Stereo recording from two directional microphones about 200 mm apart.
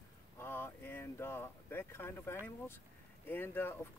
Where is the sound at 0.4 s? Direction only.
10° left (ahead or behind).